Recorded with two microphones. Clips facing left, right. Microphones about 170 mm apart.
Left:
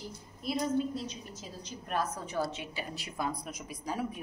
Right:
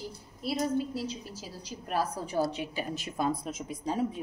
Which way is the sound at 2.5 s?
40° right (ahead or behind).